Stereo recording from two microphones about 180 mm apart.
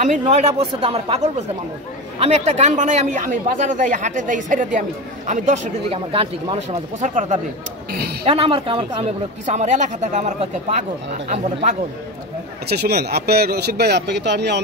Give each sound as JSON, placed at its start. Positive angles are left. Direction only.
{"t": 0.4, "sound": "a man's voice", "side_deg": -30}
{"t": 8.3, "sound": "a man's voice", "side_deg": -30}
{"t": 12.6, "sound": "a man's voice", "side_deg": -60}